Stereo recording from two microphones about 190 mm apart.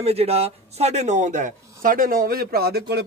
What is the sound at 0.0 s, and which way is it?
Speech, 30° right (ahead or behind).